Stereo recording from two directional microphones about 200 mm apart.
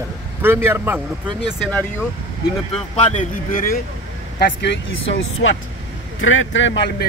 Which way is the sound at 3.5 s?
45° left (ahead or behind).